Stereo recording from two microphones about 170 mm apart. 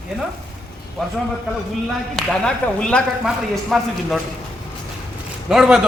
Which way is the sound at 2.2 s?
5° left (ahead or behind).